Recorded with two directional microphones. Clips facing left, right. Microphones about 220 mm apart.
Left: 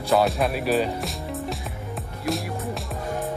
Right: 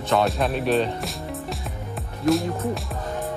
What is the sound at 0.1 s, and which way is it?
Speech, centre (ahead or behind).